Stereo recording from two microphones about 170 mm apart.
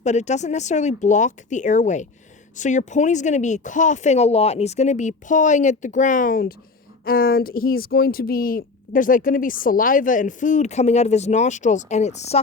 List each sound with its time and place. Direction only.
0.0 s speech: 45° left (ahead or behind)